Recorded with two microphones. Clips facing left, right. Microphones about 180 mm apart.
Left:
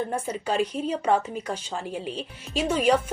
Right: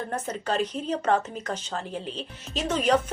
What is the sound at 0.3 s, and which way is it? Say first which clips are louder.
Speech: left 2 dB; 10° left (ahead or behind).